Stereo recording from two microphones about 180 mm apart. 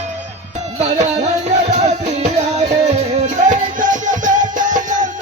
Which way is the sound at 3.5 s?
45° right (ahead or behind).